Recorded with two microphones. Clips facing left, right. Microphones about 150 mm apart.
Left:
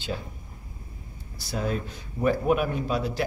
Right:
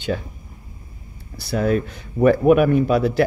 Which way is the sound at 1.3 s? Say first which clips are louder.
Right 9 dB; 65° right (ahead or behind).